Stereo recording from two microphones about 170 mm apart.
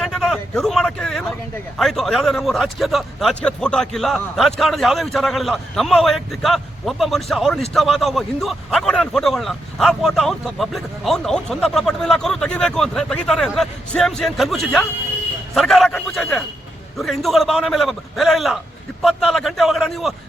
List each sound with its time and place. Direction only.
0.0 s a man's voice: centre (ahead or behind)